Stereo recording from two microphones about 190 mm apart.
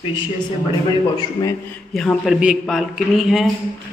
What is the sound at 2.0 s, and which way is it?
A man's voice, centre (ahead or behind).